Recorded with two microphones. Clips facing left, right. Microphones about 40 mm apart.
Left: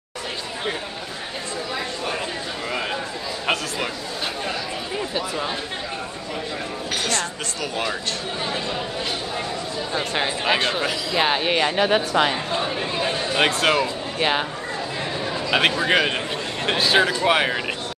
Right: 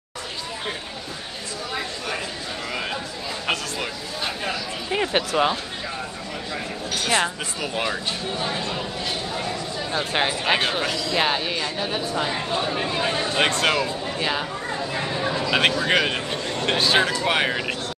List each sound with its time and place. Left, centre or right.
4.9 s speech: right
7.1 s speech: centre
10.4 s speech: centre
11.4 s speech: left
11.8 s speech: left
12.7 s chatter: centre
13.4 s speech: centre
14.1 s speech: left
15.0 s chatter: centre
15.4 s a sound: centre
15.9 s speech: centre